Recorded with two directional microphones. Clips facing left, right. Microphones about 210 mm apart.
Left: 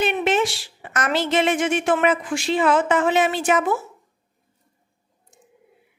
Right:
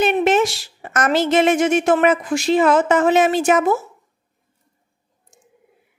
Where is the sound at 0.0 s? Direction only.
45° right (ahead or behind).